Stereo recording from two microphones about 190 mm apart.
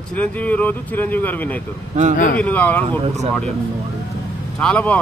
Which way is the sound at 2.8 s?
35° right (ahead or behind).